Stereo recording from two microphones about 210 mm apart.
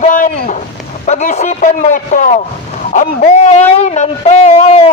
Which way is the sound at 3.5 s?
35° left (ahead or behind).